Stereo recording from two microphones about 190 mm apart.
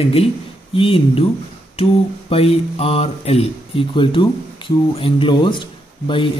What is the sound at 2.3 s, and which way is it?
Speech, 30° left (ahead or behind).